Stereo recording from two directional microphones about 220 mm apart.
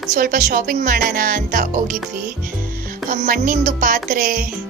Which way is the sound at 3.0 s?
35° right (ahead or behind).